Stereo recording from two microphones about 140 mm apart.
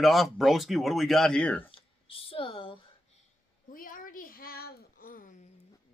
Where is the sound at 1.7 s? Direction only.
40° left (ahead or behind).